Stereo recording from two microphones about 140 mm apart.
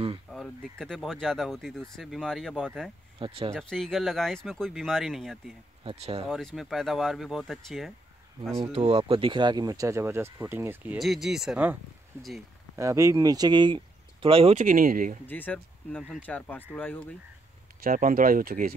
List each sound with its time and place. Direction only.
0.3 s speech: 5° left (ahead or behind)
3.2 s speech: 40° right (ahead or behind)
3.5 s speech: 5° left (ahead or behind)
5.9 s speech: 45° right (ahead or behind)
6.2 s speech: centre (ahead or behind)
8.7 s speech: 40° right (ahead or behind); by 11.0 s 15° right (ahead or behind)
11.0 s speech: centre (ahead or behind)
12.7 s speech: 20° right (ahead or behind); by 14.6 s 45° right (ahead or behind)
14.6 s speech: 85° right
15.2 s speech: 15° left (ahead or behind)
17.8 s speech: 80° right